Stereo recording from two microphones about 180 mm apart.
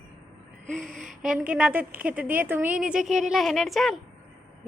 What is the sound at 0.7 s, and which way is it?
Speech, centre (ahead or behind).